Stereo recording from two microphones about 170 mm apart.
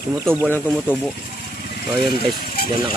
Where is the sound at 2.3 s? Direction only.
65° left (ahead or behind).